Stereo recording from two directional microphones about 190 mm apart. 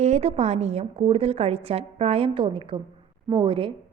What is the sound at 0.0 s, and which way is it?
A woman's voice, 35° right (ahead or behind).